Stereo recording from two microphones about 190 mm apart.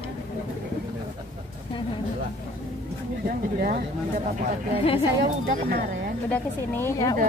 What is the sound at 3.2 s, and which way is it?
Speech, 50° right (ahead or behind).